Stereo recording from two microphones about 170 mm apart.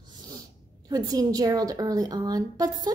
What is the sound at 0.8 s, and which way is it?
A woman's voice, 20° right (ahead or behind).